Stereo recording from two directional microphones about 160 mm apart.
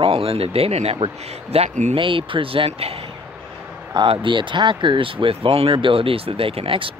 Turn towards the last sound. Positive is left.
turn(degrees=-35)  # may be behind; listen again after turning